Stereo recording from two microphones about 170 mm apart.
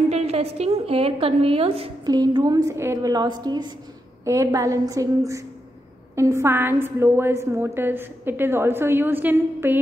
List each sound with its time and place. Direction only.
0.1 s a woman's voice: 40° right (ahead or behind)
2.0 s a woman's voice: 20° right (ahead or behind)